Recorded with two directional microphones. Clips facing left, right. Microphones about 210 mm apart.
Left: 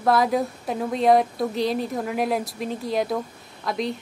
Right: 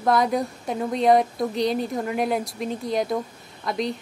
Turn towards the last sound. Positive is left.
turn(degrees=0)  # may be behind; listen again after turning